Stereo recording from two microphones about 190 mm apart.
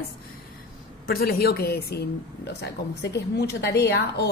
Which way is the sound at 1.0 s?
50° left (ahead or behind).